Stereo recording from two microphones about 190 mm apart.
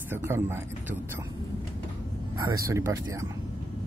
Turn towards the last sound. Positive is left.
turn(degrees=-20)  # may be behind; listen again after turning